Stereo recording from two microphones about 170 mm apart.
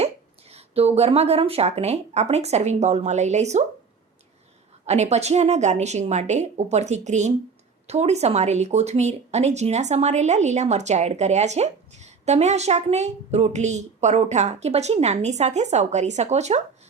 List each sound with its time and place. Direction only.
0.0 s speech: 40° right (ahead or behind)
4.9 s speech: 40° right (ahead or behind)